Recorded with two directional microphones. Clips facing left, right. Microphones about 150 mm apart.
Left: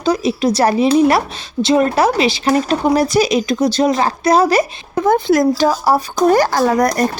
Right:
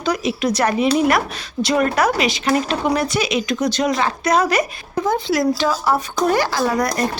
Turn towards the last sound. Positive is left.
turn(degrees=45)  # may be behind; listen again after turning